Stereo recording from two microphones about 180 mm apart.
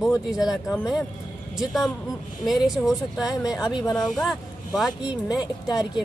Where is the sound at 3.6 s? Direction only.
20° left (ahead or behind).